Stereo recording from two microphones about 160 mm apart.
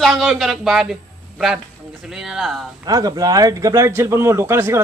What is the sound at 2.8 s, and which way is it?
Speech, 25° right (ahead or behind).